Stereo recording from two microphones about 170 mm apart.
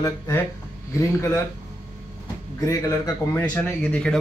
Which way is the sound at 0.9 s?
15° left (ahead or behind).